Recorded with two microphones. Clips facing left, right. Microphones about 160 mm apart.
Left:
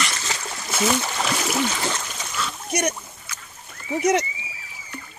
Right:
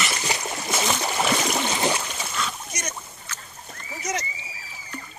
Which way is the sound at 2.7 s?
65° left (ahead or behind).